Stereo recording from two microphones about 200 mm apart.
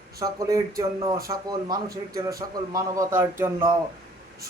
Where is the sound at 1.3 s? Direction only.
20° right (ahead or behind).